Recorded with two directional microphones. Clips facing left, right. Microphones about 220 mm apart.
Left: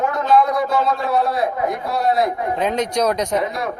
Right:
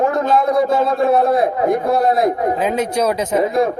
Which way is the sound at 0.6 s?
50° right (ahead or behind).